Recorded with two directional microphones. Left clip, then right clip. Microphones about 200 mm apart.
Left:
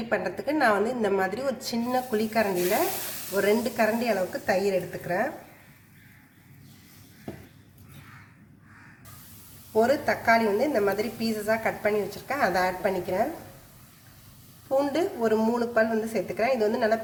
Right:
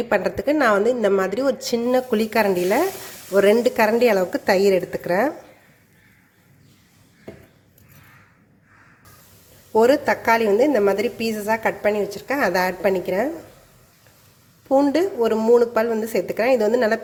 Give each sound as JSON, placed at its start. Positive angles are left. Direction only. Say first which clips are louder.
{"t": 0.1, "sound": "a woman's voice", "louder": "right 6 dB", "side_deg": -40}
{"t": 9.7, "sound": "a woman's voice", "louder": "right 7 dB", "side_deg": -40}
{"t": 14.8, "sound": "a woman's voice", "louder": "right 7 dB", "side_deg": -35}